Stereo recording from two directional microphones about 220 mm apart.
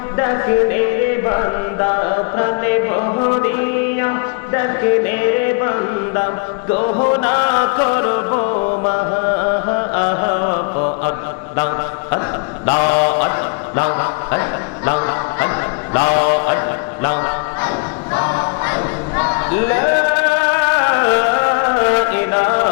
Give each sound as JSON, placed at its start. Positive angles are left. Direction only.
{"t": 0.2, "sound": "music", "side_deg": 20}
{"t": 1.3, "sound": "mantra", "side_deg": 20}
{"t": 3.9, "sound": "music", "side_deg": 15}
{"t": 5.6, "sound": "mantra", "side_deg": 20}
{"t": 7.2, "sound": "music", "side_deg": 20}
{"t": 12.6, "sound": "mantra", "side_deg": 20}
{"t": 13.1, "sound": "a sound", "side_deg": 20}
{"t": 18.1, "sound": "choir", "side_deg": 20}